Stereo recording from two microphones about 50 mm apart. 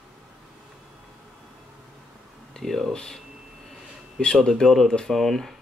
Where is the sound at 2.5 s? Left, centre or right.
Centre.